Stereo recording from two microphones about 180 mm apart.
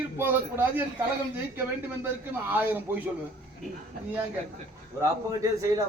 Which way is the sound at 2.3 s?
10° right (ahead or behind).